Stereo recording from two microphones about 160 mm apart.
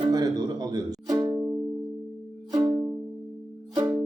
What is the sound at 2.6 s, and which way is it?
Music, 5° right (ahead or behind).